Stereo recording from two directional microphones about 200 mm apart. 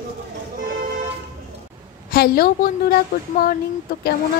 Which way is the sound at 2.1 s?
50° left (ahead or behind).